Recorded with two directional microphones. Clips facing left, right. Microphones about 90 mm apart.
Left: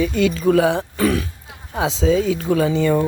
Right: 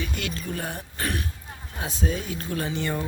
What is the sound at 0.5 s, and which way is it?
Speech, 90° left.